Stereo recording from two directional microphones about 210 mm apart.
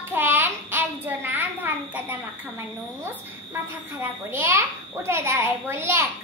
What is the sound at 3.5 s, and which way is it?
A child's voice, 10° right (ahead or behind).